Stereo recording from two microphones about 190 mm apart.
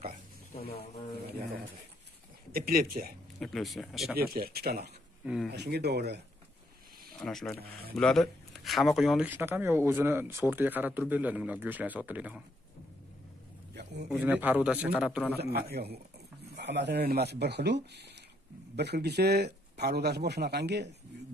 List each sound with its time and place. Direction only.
2.5 s speech: 50° right (ahead or behind)
3.3 s speech: centre (ahead or behind)
4.2 s speech: 55° right (ahead or behind)
5.2 s speech: 5° right (ahead or behind)
5.5 s a man's voice: 60° right (ahead or behind)
7.2 s speech: centre (ahead or behind)
7.5 s speech: 55° right (ahead or behind)
7.9 s speech: 5° left (ahead or behind)
14.0 s speech: 10° right (ahead or behind)
15.3 s a man's voice: 60° right (ahead or behind)